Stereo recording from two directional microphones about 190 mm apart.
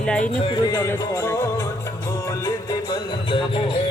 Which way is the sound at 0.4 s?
25° left (ahead or behind).